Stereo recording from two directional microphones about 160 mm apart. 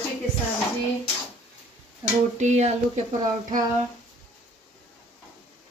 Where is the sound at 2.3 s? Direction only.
45° right (ahead or behind).